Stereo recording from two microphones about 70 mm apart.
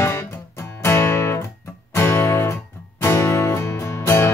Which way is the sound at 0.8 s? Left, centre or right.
Left.